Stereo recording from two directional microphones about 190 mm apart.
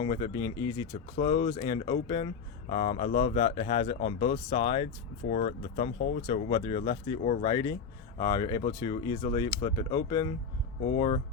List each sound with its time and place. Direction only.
0.0 s speech: 25° left (ahead or behind)
5.3 s speech: 40° left (ahead or behind)